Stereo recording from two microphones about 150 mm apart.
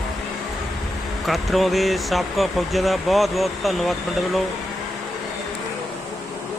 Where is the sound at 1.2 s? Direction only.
Centre (ahead or behind).